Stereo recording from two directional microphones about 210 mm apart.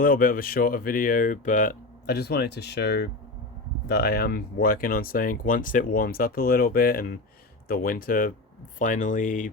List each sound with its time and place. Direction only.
0.0 s speech: 40° left (ahead or behind)